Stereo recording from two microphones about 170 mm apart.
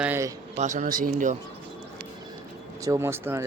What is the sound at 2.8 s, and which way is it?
Speech, 15° right (ahead or behind).